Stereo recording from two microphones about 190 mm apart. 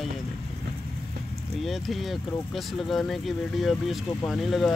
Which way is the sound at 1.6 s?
Centre (ahead or behind).